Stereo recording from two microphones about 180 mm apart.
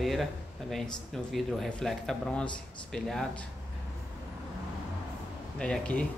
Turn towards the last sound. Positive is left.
turn(degrees=5)  # may be behind; listen again after turning